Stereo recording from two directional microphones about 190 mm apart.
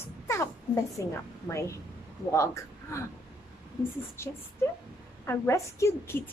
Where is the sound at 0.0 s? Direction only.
15° left (ahead or behind).